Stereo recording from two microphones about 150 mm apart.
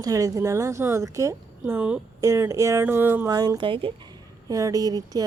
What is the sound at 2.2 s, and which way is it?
Speech, 20° right (ahead or behind).